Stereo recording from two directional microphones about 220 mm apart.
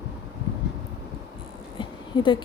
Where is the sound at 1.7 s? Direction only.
20° left (ahead or behind).